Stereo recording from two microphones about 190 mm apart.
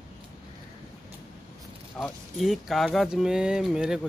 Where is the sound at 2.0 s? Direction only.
Centre (ahead or behind).